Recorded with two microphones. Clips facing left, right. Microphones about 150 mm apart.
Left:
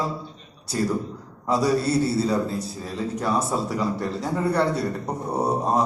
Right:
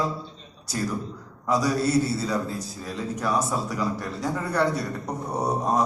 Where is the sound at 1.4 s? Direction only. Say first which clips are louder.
Left 2 dB; 30° left (ahead or behind).